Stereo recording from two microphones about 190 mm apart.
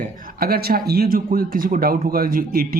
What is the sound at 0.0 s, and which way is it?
Speech, 45° right (ahead or behind).